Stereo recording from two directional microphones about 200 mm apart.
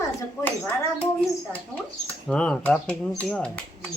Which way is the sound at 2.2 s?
5° left (ahead or behind).